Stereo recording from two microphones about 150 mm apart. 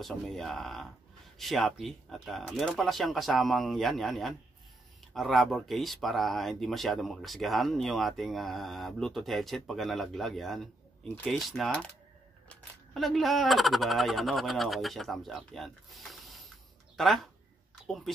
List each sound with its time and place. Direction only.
0.0 s speech: centre (ahead or behind)